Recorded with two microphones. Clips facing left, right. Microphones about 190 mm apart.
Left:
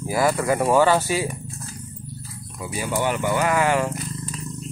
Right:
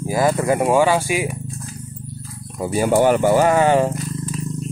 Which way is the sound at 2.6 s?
45° right (ahead or behind).